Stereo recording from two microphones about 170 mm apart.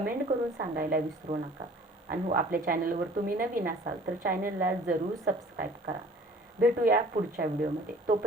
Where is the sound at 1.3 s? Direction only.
45° right (ahead or behind).